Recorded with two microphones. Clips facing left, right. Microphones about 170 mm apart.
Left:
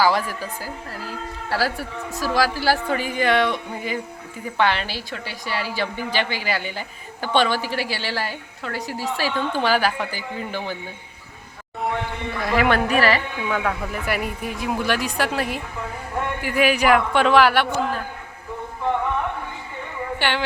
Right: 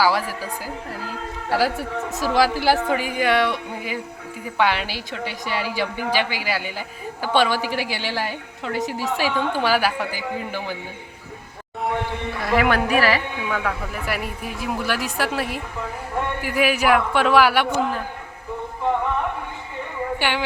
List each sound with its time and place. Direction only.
0.0 s a woman's voice: 10° right (ahead or behind)
12.5 s a woman's voice: 5° right (ahead or behind)
13.5 s speech: 5° left (ahead or behind); by 18.0 s 15° right (ahead or behind)
20.1 s speech: 10° right (ahead or behind)